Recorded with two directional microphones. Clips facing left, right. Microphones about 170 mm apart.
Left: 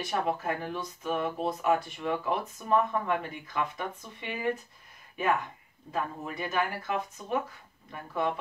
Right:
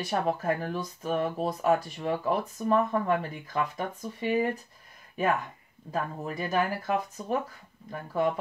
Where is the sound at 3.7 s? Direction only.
35° right (ahead or behind).